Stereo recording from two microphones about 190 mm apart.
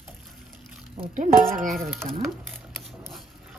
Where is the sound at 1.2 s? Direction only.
45° right (ahead or behind).